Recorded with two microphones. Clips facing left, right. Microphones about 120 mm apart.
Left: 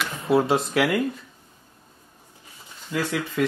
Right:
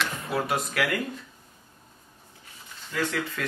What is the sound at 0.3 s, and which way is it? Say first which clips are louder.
Speech: left 10 dB; 25° left (ahead or behind).